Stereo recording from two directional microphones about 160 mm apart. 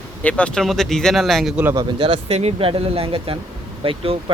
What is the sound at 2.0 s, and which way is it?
Speech, 35° right (ahead or behind).